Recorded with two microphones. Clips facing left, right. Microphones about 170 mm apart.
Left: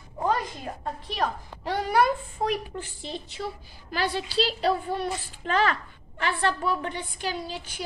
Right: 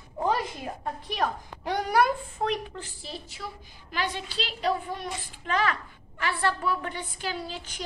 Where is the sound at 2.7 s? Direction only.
20° left (ahead or behind).